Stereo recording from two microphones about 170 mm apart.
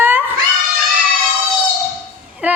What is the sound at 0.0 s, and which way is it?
Cat, 10° right (ahead or behind).